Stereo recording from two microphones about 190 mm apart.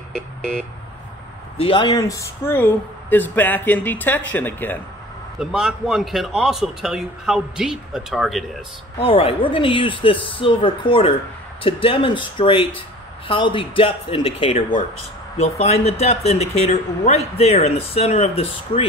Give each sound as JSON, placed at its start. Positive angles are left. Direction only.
{"t": 0.1, "sound": "vehicle", "side_deg": 5}
{"t": 1.6, "sound": "speech", "side_deg": 25}
{"t": 5.4, "sound": "a man's voice", "side_deg": 0}
{"t": 8.9, "sound": "speech", "side_deg": 30}